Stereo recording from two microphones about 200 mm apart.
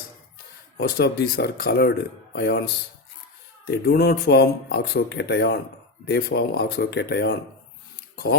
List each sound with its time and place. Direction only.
0.8 s speech: 55° left (ahead or behind)
3.7 s speech: 55° left (ahead or behind)
8.1 s dishes: 55° left (ahead or behind)